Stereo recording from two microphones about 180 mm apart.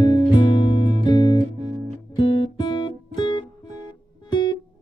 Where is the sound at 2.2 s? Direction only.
25° left (ahead or behind).